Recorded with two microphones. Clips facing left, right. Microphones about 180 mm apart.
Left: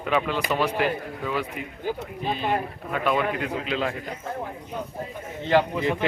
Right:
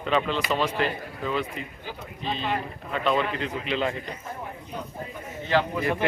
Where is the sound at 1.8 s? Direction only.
45° left (ahead or behind).